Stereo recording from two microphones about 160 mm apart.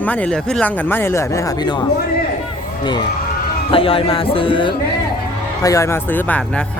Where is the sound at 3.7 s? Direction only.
35° left (ahead or behind).